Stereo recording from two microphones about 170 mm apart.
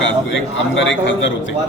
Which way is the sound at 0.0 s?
90° left.